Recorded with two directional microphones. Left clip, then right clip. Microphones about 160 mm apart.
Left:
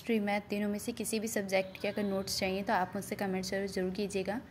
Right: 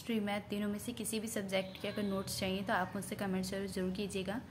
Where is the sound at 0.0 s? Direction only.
25° left (ahead or behind).